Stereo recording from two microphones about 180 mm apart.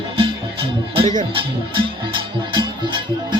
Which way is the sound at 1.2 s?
30° right (ahead or behind).